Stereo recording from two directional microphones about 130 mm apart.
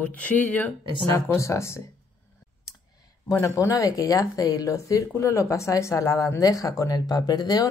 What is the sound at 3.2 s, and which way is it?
Speech, 25° left (ahead or behind).